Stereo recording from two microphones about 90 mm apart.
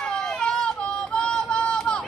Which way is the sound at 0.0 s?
5° left (ahead or behind).